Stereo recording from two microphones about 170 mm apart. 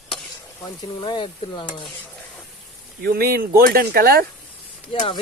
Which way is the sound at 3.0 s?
65° right (ahead or behind).